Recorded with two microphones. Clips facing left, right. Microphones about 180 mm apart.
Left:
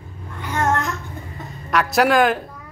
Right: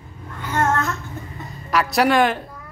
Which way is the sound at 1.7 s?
Centre (ahead or behind).